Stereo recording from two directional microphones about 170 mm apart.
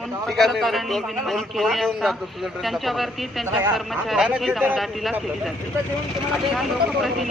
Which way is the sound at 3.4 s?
15° right (ahead or behind).